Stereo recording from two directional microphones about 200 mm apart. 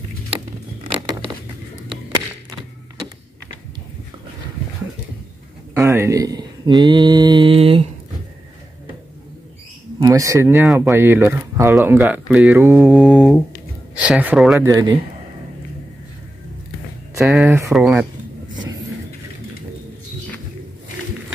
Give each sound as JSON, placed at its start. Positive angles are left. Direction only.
{"t": 5.8, "sound": "speech", "side_deg": -15}
{"t": 9.9, "sound": "speech", "side_deg": -15}
{"t": 14.6, "sound": "speech", "side_deg": -20}
{"t": 17.3, "sound": "speech", "side_deg": 0}